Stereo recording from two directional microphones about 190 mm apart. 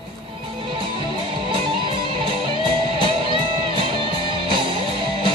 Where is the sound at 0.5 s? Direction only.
25° right (ahead or behind).